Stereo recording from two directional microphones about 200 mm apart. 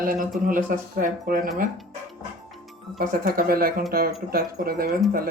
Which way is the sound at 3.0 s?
45° right (ahead or behind).